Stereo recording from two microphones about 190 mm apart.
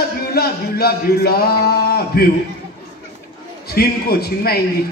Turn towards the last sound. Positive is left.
turn(degrees=55)  # may be behind; listen again after turning